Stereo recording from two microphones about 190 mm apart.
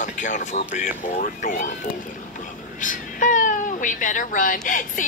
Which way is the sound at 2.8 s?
45° left (ahead or behind).